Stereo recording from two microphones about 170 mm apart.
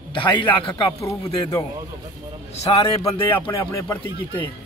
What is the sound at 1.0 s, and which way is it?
Speech, 20° left (ahead or behind).